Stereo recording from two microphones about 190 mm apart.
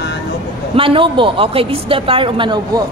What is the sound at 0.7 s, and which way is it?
Speech, 25° right (ahead or behind).